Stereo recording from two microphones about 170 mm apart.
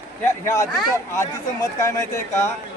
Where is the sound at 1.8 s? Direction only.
15° left (ahead or behind).